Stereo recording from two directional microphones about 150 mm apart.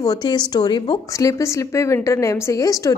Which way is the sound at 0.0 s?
25° left (ahead or behind).